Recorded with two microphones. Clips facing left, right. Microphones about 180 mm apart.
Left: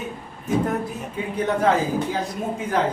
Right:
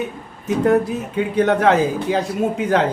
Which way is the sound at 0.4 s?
80° right.